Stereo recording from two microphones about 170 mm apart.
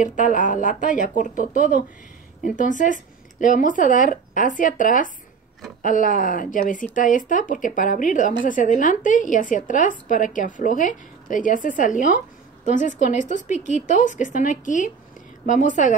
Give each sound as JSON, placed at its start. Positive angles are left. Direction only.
{"t": 0.0, "sound": "speech", "side_deg": 50}